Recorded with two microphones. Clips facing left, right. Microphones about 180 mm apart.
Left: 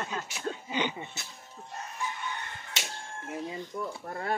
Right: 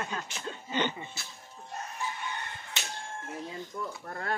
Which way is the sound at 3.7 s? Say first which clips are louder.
Left 2 dB; 20° left (ahead or behind).